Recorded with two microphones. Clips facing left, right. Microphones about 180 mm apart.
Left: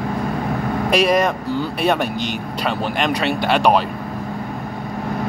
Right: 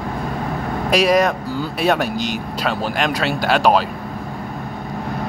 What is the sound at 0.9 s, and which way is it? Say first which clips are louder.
Speech: right 1 dB; 55° left (ahead or behind).